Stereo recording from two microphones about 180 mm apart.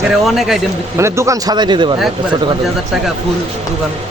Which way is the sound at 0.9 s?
15° right (ahead or behind).